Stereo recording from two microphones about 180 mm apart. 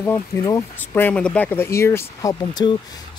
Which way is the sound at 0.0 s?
15° left (ahead or behind).